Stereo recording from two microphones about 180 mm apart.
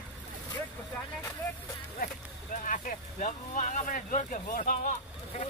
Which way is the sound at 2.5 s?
50° left (ahead or behind).